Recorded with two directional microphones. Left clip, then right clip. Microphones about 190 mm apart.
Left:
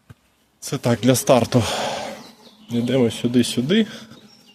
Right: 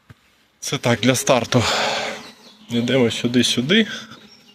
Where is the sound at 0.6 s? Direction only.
25° left (ahead or behind).